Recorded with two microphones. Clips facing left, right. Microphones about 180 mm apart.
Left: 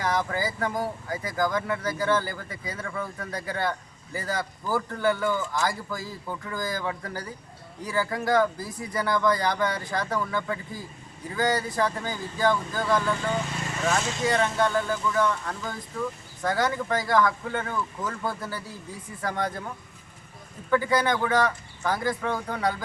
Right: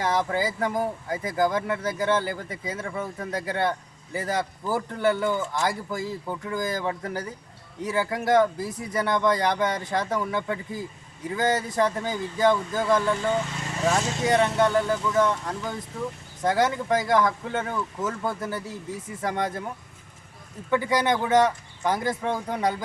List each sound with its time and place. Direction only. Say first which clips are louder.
0.0 s speech: right 2 dB; 20° right (ahead or behind)
20.7 s speech: even; 20° right (ahead or behind)